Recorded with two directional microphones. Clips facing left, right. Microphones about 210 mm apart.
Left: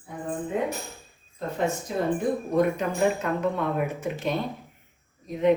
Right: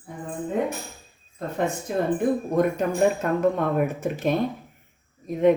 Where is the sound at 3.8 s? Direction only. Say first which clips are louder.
Right 4 dB; 45° right (ahead or behind).